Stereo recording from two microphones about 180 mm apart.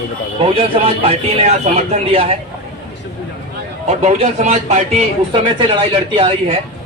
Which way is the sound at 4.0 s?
40° right (ahead or behind).